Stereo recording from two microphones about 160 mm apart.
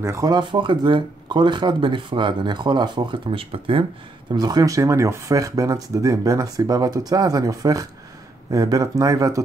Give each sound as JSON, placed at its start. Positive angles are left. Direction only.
{"t": 0.0, "sound": "speech", "side_deg": -20}